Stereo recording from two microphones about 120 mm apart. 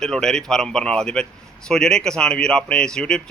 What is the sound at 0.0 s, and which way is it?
A man's voice, 5° left (ahead or behind).